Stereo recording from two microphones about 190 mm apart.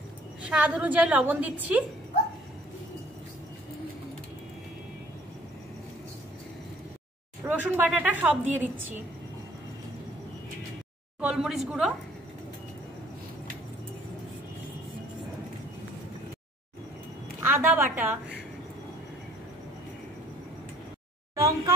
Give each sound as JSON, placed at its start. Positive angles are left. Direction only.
{"t": 0.5, "sound": "a woman's voice", "side_deg": -5}
{"t": 7.4, "sound": "a woman's voice", "side_deg": -10}
{"t": 11.1, "sound": "speech", "side_deg": -5}
{"t": 17.4, "sound": "a woman's voice", "side_deg": -10}
{"t": 21.4, "sound": "a sound", "side_deg": -15}